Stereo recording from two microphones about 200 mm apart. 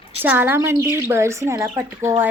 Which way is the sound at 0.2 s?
10° right (ahead or behind).